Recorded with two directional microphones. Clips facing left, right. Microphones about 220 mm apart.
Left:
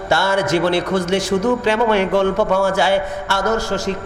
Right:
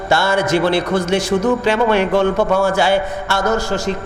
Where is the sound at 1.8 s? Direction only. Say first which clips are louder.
Right 1 dB; 20° right (ahead or behind).